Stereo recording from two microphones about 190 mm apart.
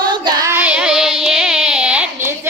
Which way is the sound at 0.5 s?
5° right (ahead or behind).